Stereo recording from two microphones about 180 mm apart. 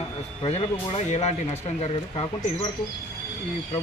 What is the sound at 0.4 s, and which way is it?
Speech, 35° left (ahead or behind).